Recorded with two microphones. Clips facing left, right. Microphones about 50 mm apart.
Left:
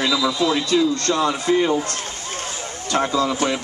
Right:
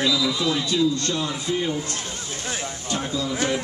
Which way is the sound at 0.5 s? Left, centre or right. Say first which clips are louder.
Left 3 dB; left.